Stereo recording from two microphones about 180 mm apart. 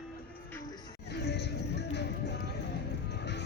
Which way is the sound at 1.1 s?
70° left (ahead or behind).